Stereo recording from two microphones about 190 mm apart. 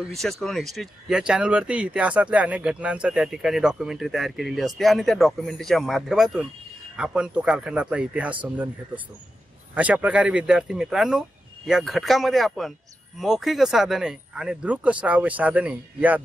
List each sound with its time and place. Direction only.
0.0 s speech: centre (ahead or behind)